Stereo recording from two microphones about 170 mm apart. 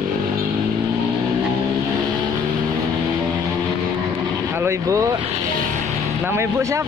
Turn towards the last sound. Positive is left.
turn(degrees=-15)  # may be behind; listen again after turning